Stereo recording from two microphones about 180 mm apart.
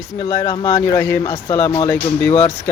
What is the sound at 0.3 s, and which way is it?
Speech, 25° left (ahead or behind).